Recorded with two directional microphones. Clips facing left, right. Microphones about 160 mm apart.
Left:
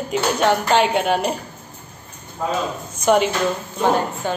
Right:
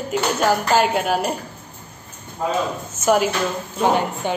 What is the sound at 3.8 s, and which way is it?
Speech, 15° right (ahead or behind).